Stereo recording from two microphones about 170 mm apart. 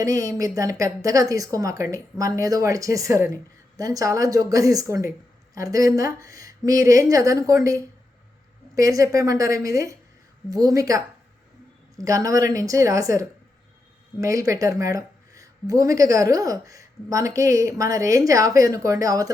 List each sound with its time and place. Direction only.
0.0 s speech: 20° right (ahead or behind)
12.0 s speech: 20° right (ahead or behind)